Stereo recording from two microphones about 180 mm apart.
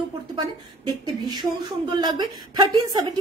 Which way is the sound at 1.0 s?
25° right (ahead or behind).